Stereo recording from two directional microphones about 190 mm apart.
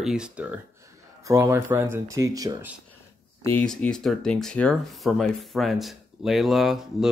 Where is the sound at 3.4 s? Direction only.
5° left (ahead or behind).